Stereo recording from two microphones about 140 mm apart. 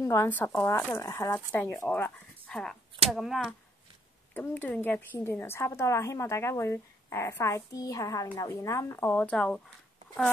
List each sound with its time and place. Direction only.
0.0 s a woman's voice: 20° left (ahead or behind); by 3.5 s centre (ahead or behind)
4.3 s a woman's voice: 15° left (ahead or behind)